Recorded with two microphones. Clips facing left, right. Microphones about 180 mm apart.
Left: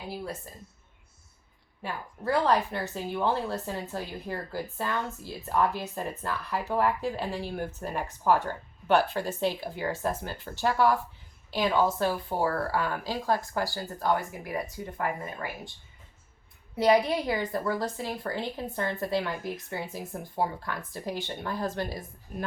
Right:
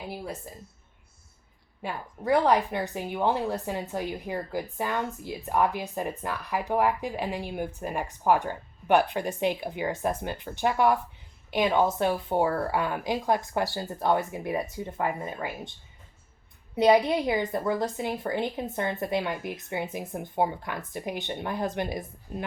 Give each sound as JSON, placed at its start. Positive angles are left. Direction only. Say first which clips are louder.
{"t": 1.8, "sound": "a woman's voice", "louder": "right 2 dB", "side_deg": -15}
{"t": 16.7, "sound": "a woman's voice", "louder": "right 2 dB", "side_deg": -20}